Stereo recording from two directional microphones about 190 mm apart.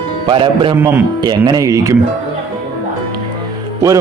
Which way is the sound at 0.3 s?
25° right (ahead or behind).